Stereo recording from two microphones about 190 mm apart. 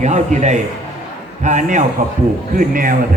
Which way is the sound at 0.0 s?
40° right (ahead or behind).